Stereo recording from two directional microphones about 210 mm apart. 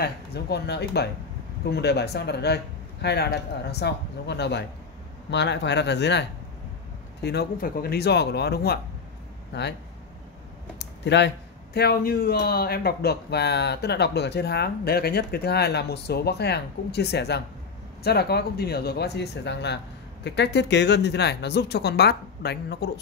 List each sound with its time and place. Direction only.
0.0 s speech: 50° left (ahead or behind)
7.2 s speech: 50° left (ahead or behind)
10.8 s speech: 55° left (ahead or behind)